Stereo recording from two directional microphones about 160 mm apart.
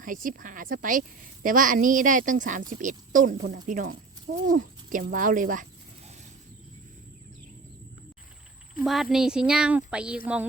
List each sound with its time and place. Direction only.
0.0 s speech: 55° right (ahead or behind)
8.8 s speech: centre (ahead or behind)